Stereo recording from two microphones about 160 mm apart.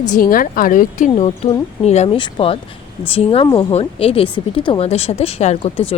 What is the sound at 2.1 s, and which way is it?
Speech, 35° left (ahead or behind).